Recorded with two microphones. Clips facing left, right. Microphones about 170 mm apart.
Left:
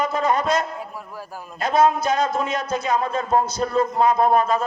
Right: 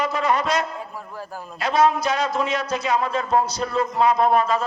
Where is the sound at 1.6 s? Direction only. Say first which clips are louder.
Left 1 dB; 50° left (ahead or behind).